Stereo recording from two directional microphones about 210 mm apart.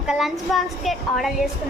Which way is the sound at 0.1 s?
Centre (ahead or behind).